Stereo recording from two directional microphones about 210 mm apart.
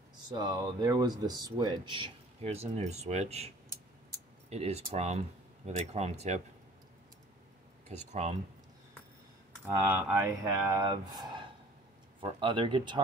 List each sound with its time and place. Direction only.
0.3 s speech: 20° right (ahead or behind)
8.1 s speech: 30° right (ahead or behind)
9.8 s speech: 10° right (ahead or behind)